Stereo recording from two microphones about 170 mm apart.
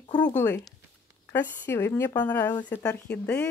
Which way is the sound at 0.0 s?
25° left (ahead or behind).